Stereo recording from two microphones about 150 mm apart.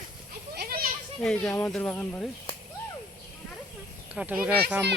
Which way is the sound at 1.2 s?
10° left (ahead or behind).